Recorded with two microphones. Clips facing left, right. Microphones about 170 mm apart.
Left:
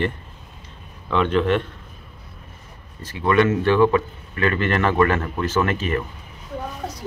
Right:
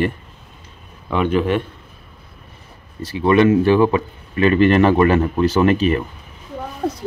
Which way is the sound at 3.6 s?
10° right (ahead or behind).